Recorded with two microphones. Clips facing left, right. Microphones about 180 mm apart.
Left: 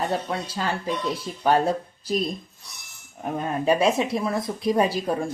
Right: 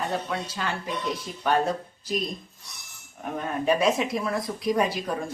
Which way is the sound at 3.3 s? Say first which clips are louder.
Left 2 dB; 30° left (ahead or behind).